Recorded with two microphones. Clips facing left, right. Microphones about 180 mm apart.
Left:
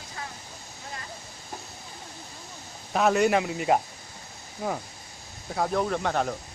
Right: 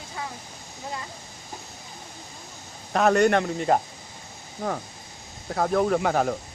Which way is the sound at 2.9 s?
Centre (ahead or behind).